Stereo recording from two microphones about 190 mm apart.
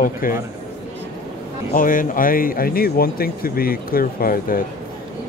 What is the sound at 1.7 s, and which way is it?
Speech, 45° left (ahead or behind).